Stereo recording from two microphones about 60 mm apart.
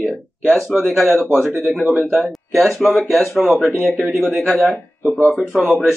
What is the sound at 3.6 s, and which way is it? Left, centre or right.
Speech, left.